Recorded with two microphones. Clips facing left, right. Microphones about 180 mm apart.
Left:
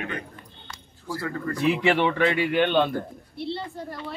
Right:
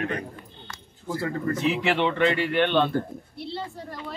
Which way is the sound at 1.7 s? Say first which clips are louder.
Left 2 dB; 10° left (ahead or behind).